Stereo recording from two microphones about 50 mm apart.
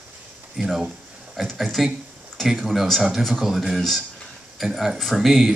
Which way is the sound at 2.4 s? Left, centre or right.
Centre.